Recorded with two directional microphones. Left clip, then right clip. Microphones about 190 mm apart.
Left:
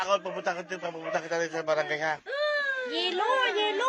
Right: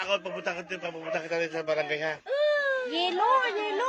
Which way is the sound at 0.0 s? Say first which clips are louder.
Left 2 dB; 25° right (ahead or behind).